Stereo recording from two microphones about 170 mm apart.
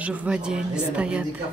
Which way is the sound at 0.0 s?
10° right (ahead or behind).